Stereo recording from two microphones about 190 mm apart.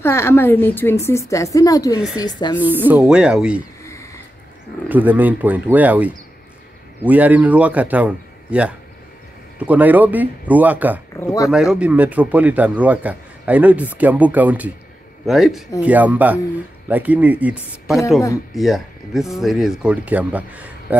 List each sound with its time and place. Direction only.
0.0 s a woman's voice: 15° left (ahead or behind)
2.6 s speech: 10° right (ahead or behind)
3.8 s a sound: 15° left (ahead or behind)
4.8 s a man's voice: 10° right (ahead or behind)
11.1 s speech: 15° left (ahead or behind)
11.5 s a man's voice: 5° right (ahead or behind)